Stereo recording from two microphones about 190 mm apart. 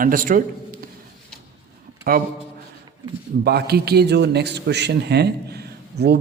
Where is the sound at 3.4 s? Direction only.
55° right (ahead or behind).